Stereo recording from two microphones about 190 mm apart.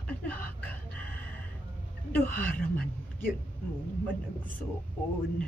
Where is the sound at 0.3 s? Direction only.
10° left (ahead or behind).